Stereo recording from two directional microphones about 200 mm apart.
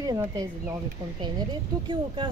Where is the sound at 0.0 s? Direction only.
20° right (ahead or behind).